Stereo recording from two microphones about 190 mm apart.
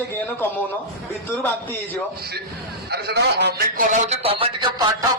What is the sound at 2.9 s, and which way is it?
A man's voice, 60° right (ahead or behind).